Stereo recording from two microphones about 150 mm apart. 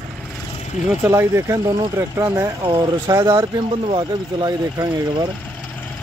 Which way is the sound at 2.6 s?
30° right (ahead or behind).